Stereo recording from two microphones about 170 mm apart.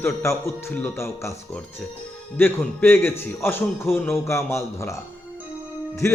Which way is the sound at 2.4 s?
15° left (ahead or behind).